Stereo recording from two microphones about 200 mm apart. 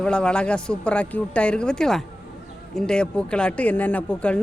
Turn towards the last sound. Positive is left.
turn(degrees=5)  # may be behind; listen again after turning